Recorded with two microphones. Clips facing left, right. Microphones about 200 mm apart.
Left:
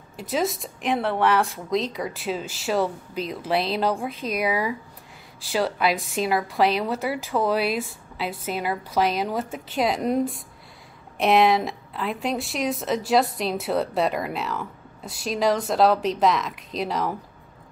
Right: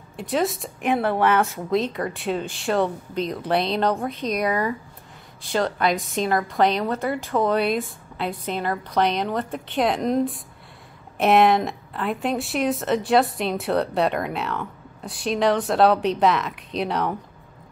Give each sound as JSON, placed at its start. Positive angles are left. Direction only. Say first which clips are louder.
{"t": 0.2, "sound": "speech", "louder": "right 2 dB", "side_deg": 0}